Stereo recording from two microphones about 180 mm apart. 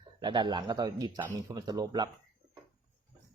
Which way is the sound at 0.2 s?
25° right (ahead or behind).